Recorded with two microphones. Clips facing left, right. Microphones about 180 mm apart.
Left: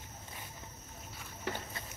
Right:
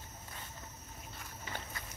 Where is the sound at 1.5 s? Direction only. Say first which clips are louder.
Left 7 dB; 70° left (ahead or behind).